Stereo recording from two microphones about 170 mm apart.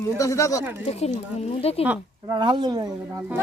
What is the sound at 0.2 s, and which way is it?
Speech, 20° left (ahead or behind).